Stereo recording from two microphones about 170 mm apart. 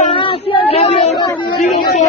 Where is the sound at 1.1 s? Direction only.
20° left (ahead or behind).